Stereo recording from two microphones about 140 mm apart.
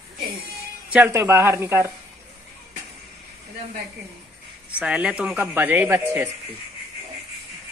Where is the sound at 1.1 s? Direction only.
20° right (ahead or behind).